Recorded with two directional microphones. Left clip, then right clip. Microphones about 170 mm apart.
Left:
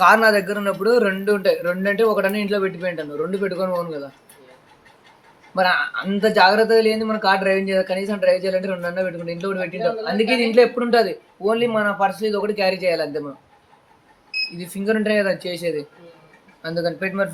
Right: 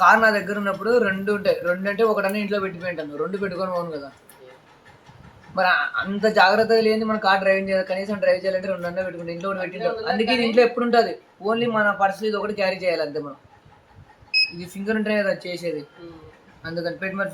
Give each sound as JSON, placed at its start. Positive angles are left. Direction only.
{"t": 0.0, "sound": "a man's voice", "side_deg": 65}
{"t": 3.4, "sound": "speech", "side_deg": 40}
{"t": 5.5, "sound": "a man's voice", "side_deg": 50}
{"t": 14.8, "sound": "a man's voice", "side_deg": 60}